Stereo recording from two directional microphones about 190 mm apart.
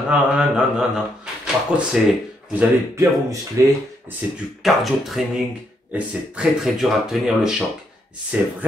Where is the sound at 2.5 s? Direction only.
10° right (ahead or behind).